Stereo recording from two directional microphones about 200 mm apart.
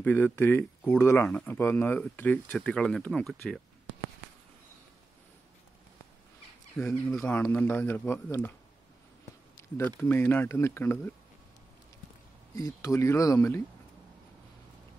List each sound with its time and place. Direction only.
0.0 s speech: 10° left (ahead or behind)
6.8 s speech: 5° left (ahead or behind)
9.8 s speech: 10° left (ahead or behind)
12.5 s speech: 15° left (ahead or behind)